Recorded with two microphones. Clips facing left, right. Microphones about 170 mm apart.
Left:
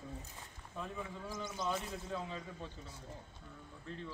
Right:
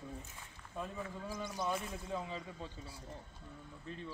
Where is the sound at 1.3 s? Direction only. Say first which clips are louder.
Even; 15° right (ahead or behind).